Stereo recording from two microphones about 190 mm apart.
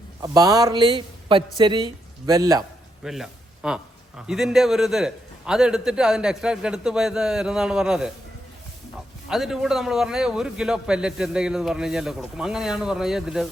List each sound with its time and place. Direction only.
0.2 s speech: 20° right (ahead or behind)
3.0 s a sound: centre (ahead or behind)
4.3 s a man's voice: centre (ahead or behind)
9.3 s a man's voice: centre (ahead or behind)